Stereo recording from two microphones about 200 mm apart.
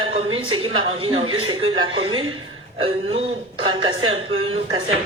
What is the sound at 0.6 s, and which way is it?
Speech, 25° right (ahead or behind).